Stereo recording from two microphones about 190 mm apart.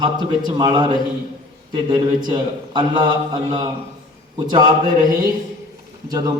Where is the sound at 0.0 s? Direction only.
25° right (ahead or behind).